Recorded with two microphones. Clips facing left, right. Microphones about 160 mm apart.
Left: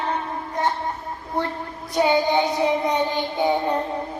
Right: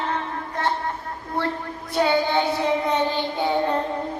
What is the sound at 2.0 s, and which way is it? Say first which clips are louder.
Child singing: left 2 dB; 15° left (ahead or behind).